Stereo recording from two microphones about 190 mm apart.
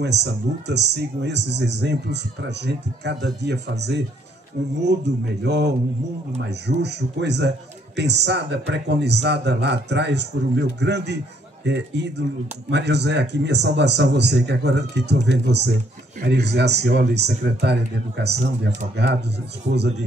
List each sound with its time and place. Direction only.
0.0 s a man's voice: 65° right (ahead or behind)
6.8 s a man's voice: 65° right (ahead or behind)